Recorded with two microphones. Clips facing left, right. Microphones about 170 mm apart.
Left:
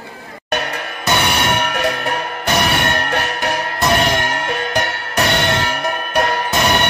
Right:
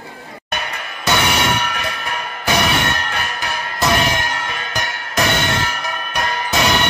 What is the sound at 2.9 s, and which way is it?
Music, 60° left (ahead or behind).